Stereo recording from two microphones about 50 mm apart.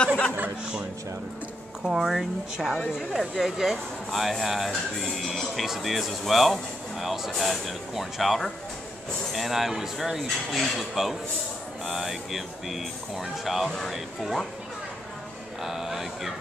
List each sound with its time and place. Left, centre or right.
0.0 s a sound: centre
1.9 s speech: centre
13.7 s speech: centre
15.6 s speech: centre